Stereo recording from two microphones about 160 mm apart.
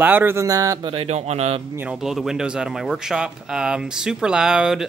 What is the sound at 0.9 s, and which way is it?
Speech, 40° right (ahead or behind).